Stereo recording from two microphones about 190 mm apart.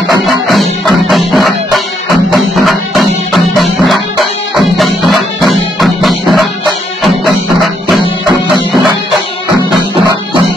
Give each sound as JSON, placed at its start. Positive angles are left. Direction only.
{"t": 0.2, "sound": "music", "side_deg": 0}